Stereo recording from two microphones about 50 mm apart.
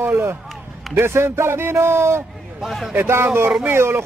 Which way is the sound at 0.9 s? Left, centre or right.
Right.